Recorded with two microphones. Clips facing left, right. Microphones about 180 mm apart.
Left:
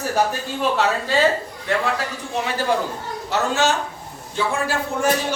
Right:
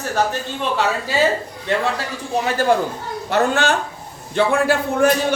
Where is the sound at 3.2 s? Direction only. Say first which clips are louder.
Right 3 dB; 55° right (ahead or behind).